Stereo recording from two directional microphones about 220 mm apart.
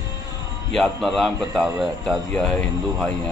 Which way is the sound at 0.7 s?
Centre (ahead or behind).